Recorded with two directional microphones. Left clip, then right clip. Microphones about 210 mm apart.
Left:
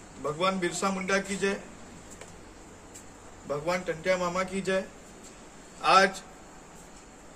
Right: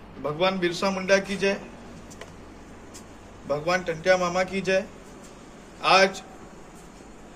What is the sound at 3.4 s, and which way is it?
A man's voice, 15° left (ahead or behind).